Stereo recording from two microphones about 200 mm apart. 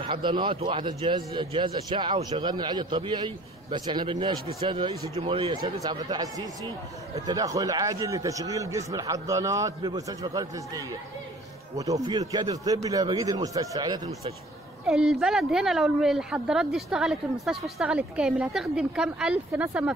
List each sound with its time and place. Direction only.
0.0 s a man's voice: 25° right (ahead or behind)
14.9 s speech: centre (ahead or behind)